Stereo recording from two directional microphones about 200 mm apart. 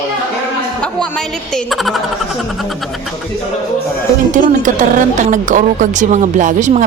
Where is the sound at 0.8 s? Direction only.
5° left (ahead or behind).